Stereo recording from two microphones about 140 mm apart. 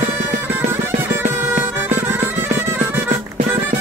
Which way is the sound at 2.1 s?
15° right (ahead or behind).